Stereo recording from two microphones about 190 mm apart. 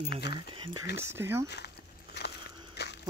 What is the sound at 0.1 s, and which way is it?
Speech, 60° left (ahead or behind).